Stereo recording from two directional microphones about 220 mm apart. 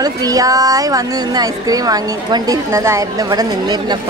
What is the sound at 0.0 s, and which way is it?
A woman's voice, 15° right (ahead or behind).